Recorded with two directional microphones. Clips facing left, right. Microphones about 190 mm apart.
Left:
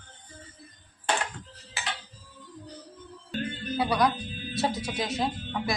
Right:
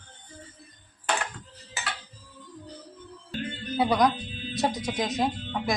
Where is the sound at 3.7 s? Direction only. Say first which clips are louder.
Right 3 dB; 20° right (ahead or behind).